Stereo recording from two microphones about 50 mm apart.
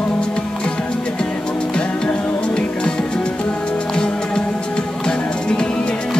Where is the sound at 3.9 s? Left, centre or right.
Centre.